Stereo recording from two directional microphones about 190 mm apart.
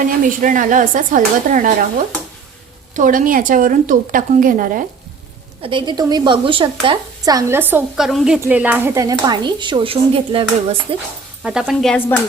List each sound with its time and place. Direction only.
0.0 s a woman's voice: 45° right (ahead or behind)
2.9 s a woman's voice: 45° right (ahead or behind)
5.6 s a woman's voice: 25° right (ahead or behind)
11.4 s speech: 5° right (ahead or behind)